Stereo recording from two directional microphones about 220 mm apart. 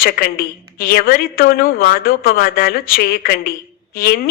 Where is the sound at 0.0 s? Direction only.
40° left (ahead or behind).